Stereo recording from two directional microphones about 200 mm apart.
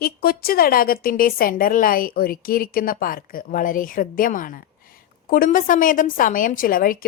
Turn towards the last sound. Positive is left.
turn(degrees=45)  # may be behind; listen again after turning